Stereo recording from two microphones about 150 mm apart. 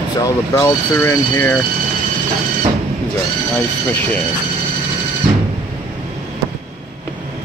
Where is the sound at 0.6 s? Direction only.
20° left (ahead or behind).